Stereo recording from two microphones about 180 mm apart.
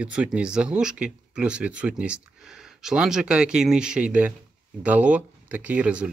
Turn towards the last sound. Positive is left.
turn(degrees=-5)  # may be behind; listen again after turning